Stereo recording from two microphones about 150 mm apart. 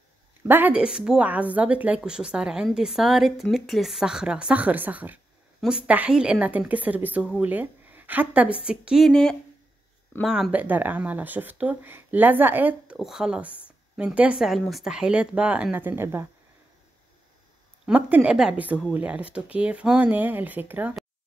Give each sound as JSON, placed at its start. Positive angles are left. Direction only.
{"t": 0.5, "sound": "a woman's voice", "side_deg": -10}
{"t": 17.8, "sound": "speech", "side_deg": -10}